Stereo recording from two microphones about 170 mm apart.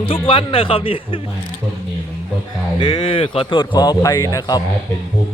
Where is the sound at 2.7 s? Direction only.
25° left (ahead or behind).